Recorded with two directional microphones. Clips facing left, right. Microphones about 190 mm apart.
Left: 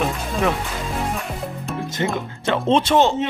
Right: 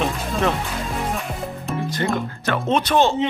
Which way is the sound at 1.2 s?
Centre (ahead or behind).